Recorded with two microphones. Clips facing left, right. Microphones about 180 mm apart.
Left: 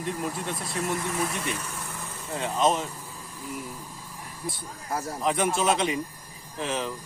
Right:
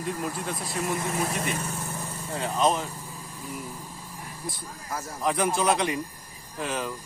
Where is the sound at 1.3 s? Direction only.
35° right (ahead or behind).